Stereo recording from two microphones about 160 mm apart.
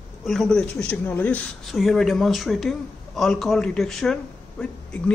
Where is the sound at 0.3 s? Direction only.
5° left (ahead or behind).